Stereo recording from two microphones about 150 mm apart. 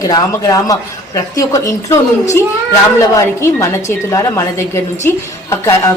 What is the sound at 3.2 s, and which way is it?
A woman's voice, 20° left (ahead or behind).